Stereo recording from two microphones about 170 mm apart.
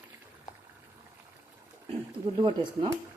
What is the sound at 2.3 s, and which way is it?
Speech, 30° right (ahead or behind).